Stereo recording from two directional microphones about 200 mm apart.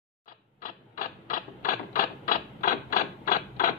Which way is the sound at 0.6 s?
40° left (ahead or behind).